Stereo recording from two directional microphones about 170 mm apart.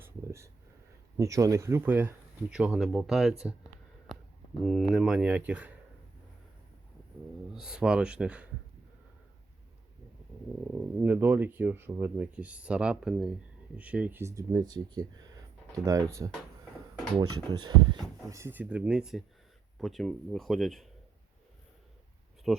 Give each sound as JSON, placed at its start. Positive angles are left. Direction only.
{"t": 0.0, "sound": "a sound", "side_deg": -15}
{"t": 1.1, "sound": "speech", "side_deg": -20}
{"t": 4.6, "sound": "speech", "side_deg": 0}
{"t": 7.5, "sound": "speech", "side_deg": -5}
{"t": 11.0, "sound": "speech", "side_deg": -10}
{"t": 22.5, "sound": "speech", "side_deg": 0}